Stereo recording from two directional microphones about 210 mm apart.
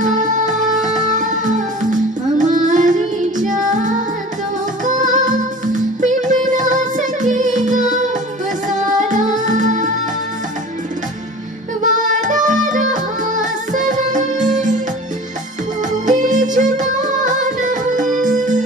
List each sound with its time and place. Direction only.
0.0 s music: 35° right (ahead or behind)
11.8 s music: 40° right (ahead or behind)
16.1 s music: 35° right (ahead or behind)